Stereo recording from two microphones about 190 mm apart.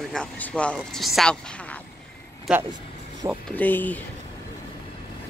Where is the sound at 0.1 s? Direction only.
5° left (ahead or behind).